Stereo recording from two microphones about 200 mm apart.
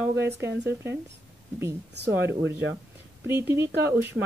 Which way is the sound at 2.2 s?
65° right (ahead or behind).